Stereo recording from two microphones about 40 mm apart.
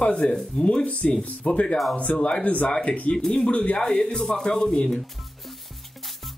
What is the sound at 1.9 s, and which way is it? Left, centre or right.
Speech, left.